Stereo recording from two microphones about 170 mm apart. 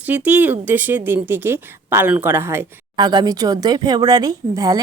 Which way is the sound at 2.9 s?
25° right (ahead or behind).